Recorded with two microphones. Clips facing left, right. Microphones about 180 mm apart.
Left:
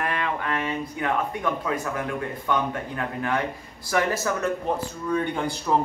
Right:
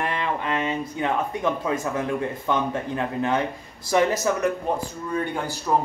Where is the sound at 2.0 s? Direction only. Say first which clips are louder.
Right 3 dB; 25° right (ahead or behind).